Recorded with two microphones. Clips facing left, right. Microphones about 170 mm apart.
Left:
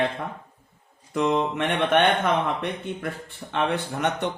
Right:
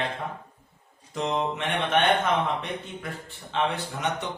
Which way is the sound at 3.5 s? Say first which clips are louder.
Left 2 dB; 55° left (ahead or behind).